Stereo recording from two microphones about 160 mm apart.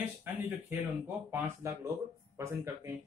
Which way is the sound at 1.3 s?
15° right (ahead or behind).